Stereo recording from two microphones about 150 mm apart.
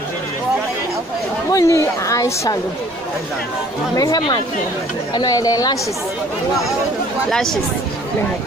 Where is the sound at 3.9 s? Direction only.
25° left (ahead or behind).